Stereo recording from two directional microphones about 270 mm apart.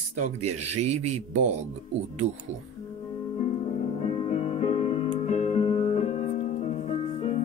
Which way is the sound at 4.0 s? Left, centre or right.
Left.